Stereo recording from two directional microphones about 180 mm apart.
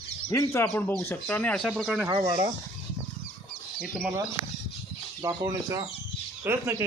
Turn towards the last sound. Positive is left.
turn(degrees=-15)  # may be behind; listen again after turning